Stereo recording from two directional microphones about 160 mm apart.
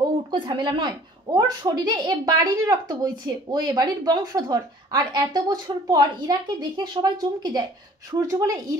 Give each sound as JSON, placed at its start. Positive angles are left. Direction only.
{"t": 0.0, "sound": "speech", "side_deg": -25}